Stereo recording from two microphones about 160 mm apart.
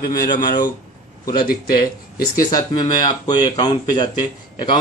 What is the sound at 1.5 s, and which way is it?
Speech, 70° left (ahead or behind).